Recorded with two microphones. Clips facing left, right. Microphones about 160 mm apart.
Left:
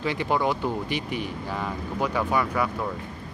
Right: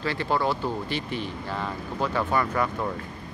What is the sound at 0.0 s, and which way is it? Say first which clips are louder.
A man's voice: left 1 dB; 15° left (ahead or behind).